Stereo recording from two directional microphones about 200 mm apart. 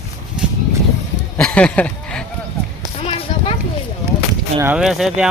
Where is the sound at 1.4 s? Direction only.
5° left (ahead or behind).